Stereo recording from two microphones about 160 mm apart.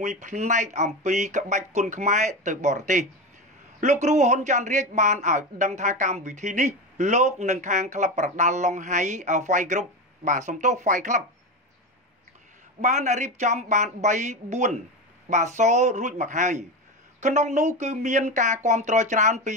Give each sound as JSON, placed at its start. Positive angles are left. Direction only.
{"t": 0.0, "sound": "speech", "side_deg": -50}
{"t": 12.8, "sound": "speech", "side_deg": -45}